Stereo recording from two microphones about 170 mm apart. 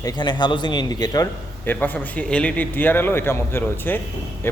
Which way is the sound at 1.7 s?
10° left (ahead or behind).